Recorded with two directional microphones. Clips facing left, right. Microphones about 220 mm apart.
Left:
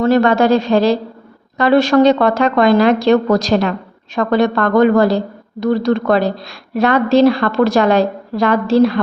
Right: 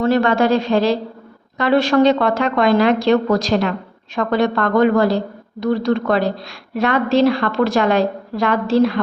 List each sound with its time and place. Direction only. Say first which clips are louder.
0.0 s a woman's voice: left 3 dB; 40° left (ahead or behind)